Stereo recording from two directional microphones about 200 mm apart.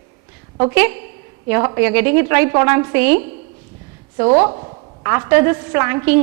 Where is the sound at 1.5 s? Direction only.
10° right (ahead or behind).